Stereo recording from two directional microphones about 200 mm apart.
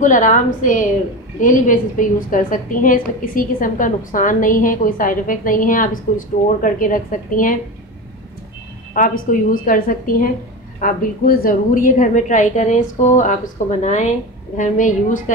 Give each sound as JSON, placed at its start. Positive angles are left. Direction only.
{"t": 0.0, "sound": "a woman's voice", "side_deg": 40}
{"t": 8.9, "sound": "a woman's voice", "side_deg": 40}